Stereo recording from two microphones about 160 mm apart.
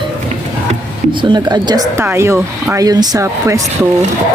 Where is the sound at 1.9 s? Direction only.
15° right (ahead or behind).